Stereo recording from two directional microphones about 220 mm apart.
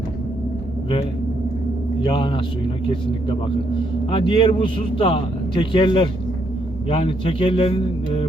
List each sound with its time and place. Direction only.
2.0 s a man's voice: 20° left (ahead or behind)